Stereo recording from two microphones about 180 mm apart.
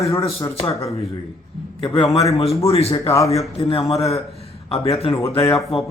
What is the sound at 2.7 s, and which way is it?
Speech, 35° left (ahead or behind).